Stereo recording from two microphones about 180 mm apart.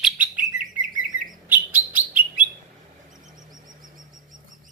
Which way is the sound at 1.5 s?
10° right (ahead or behind).